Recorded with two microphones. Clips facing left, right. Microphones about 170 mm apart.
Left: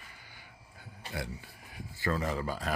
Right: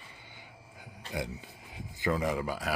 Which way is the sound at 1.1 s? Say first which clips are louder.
Right 3 dB; 20° right (ahead or behind).